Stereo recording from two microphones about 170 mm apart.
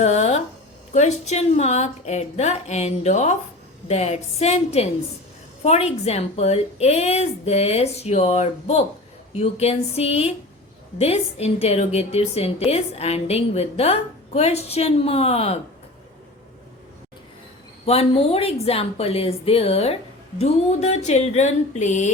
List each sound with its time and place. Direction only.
0.0 s a woman's voice: 40° left (ahead or behind)
17.8 s a woman's voice: 35° left (ahead or behind)
20.4 s a sound: 40° left (ahead or behind)